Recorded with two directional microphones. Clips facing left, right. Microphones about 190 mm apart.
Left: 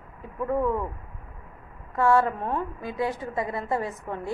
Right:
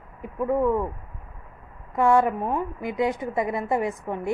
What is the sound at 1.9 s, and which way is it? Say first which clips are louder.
A woman's voice: right 2 dB; 15° right (ahead or behind).